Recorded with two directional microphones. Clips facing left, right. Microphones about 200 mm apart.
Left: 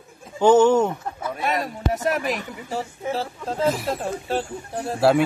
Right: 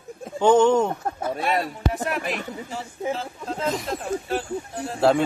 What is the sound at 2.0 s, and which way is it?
Speech, 40° left (ahead or behind).